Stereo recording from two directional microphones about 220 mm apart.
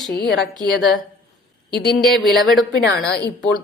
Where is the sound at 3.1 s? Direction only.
50° left (ahead or behind).